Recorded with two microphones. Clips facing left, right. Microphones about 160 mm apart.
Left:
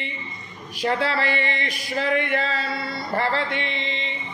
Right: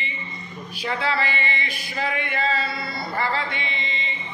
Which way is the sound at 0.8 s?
75° left (ahead or behind).